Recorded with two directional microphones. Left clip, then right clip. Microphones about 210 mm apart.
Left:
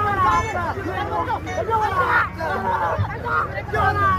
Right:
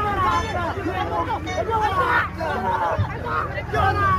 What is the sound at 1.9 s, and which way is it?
Hubbub, 5° left (ahead or behind).